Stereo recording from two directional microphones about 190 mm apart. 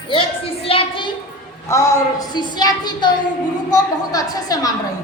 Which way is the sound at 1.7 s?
15° left (ahead or behind).